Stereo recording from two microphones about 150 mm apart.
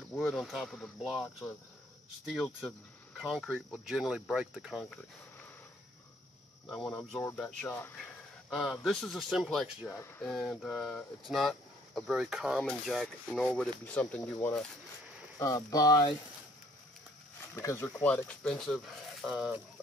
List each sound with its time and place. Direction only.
0.1 s speech: 5° left (ahead or behind)
6.7 s speech: 5° left (ahead or behind)
7.2 s speech: 15° left (ahead or behind)
8.0 s speech: 5° left (ahead or behind)
9.8 s speech: 15° left (ahead or behind)
10.3 s speech: centre (ahead or behind)
15.3 s speech: 25° left (ahead or behind)
17.6 s speech: 20° left (ahead or behind)
17.9 s speech: 10° left (ahead or behind)
19.2 s speech: 5° right (ahead or behind)